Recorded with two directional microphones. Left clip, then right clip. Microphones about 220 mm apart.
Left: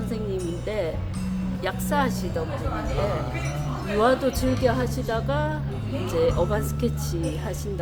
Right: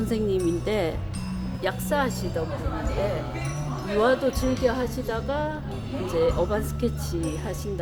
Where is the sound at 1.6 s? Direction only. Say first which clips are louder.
Even; 5° right (ahead or behind).